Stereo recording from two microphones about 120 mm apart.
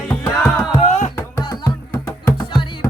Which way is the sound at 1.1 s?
25° left (ahead or behind).